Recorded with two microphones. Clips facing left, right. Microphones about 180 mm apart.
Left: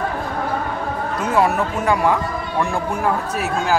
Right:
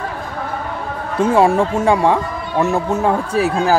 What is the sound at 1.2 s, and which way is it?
Speech, 30° right (ahead or behind).